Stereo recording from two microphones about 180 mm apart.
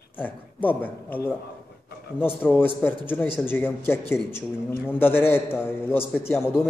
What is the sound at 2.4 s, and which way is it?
A man's voice, 10° left (ahead or behind).